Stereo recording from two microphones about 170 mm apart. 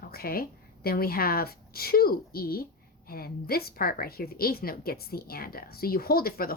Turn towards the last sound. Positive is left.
turn(degrees=60)  # may be behind; listen again after turning